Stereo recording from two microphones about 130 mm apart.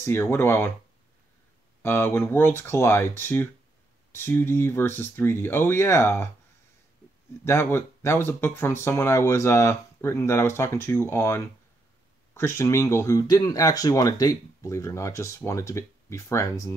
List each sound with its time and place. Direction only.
0.0 s speech: 20° left (ahead or behind)
1.8 s speech: 20° left (ahead or behind)
7.4 s speech: 20° left (ahead or behind)